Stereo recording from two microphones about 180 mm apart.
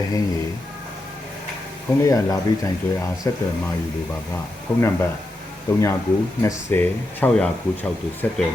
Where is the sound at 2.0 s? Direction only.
20° left (ahead or behind).